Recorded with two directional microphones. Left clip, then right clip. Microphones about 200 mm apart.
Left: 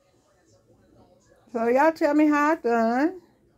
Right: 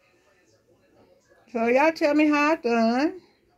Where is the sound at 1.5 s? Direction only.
10° left (ahead or behind).